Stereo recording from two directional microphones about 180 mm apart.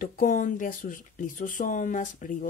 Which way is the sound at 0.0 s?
45° left (ahead or behind).